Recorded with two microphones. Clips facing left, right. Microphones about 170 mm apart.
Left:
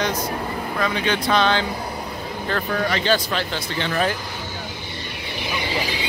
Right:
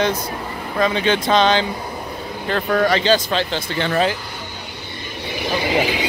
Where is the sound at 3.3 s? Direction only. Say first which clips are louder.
Right 4 dB; 25° right (ahead or behind).